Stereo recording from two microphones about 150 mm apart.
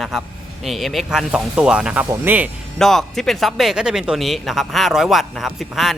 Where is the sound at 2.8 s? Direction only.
Centre (ahead or behind).